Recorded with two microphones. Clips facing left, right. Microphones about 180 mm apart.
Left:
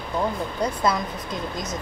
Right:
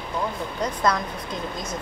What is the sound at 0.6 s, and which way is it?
Speech, 10° left (ahead or behind).